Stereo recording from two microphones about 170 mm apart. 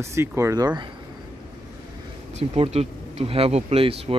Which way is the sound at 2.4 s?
35° right (ahead or behind).